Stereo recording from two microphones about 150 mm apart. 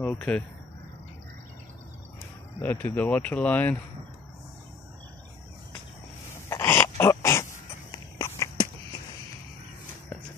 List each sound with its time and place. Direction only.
0.0 s speech: 10° left (ahead or behind)
2.6 s speech: 10° left (ahead or behind)
6.5 s dog: 15° left (ahead or behind)
7.0 s pig: 15° left (ahead or behind)
7.9 s a sound: 25° left (ahead or behind)